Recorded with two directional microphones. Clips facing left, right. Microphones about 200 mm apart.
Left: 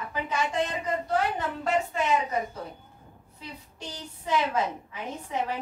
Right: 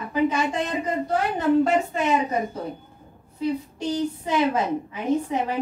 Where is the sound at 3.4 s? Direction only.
15° right (ahead or behind).